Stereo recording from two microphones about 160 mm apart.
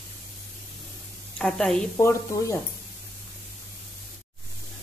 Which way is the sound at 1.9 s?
15° left (ahead or behind).